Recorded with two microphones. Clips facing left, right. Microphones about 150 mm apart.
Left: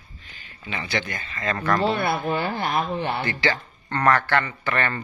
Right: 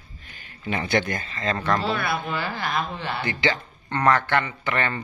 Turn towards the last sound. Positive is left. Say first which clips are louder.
# left 1 dB
turn(degrees=-15)  # may be behind; listen again after turning